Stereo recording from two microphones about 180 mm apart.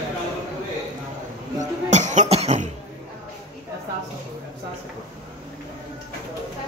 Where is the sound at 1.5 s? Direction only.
40° right (ahead or behind).